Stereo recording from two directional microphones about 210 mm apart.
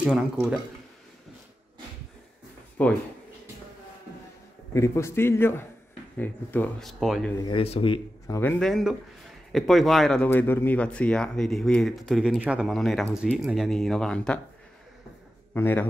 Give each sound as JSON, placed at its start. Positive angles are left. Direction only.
{"t": 0.0, "sound": "speech", "side_deg": -5}
{"t": 2.8, "sound": "a man's voice", "side_deg": 10}
{"t": 4.7, "sound": "a man's voice", "side_deg": 15}
{"t": 7.3, "sound": "speech", "side_deg": 25}
{"t": 8.4, "sound": "speech", "side_deg": 5}
{"t": 15.5, "sound": "a man's voice", "side_deg": 10}